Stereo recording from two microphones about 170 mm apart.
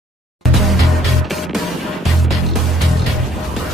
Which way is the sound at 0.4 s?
Centre (ahead or behind).